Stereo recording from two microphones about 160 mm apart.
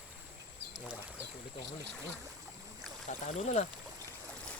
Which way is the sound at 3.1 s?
45° left (ahead or behind).